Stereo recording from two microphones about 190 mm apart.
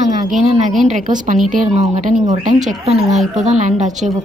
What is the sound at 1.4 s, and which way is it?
Speech, 40° right (ahead or behind).